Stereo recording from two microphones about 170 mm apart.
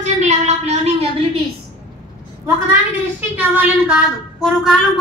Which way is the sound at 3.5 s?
5° right (ahead or behind).